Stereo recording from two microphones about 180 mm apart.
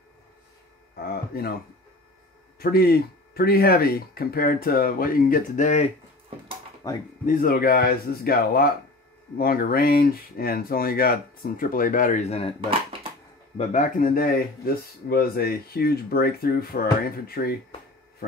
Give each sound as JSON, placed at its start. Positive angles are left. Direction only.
{"t": 2.6, "sound": "speech", "side_deg": 60}
{"t": 6.8, "sound": "speech", "side_deg": 20}
{"t": 7.2, "sound": "speech", "side_deg": 55}
{"t": 13.6, "sound": "speech", "side_deg": 40}